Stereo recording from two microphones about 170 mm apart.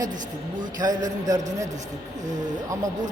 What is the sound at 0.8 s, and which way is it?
Speech, 20° right (ahead or behind).